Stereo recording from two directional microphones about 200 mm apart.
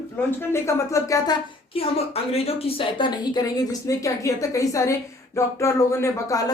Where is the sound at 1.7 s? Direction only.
30° left (ahead or behind).